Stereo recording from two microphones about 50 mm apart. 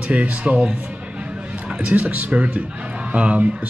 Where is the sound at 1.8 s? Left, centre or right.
Right.